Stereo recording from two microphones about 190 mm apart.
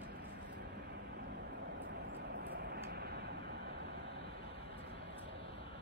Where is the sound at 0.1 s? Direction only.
50° right (ahead or behind).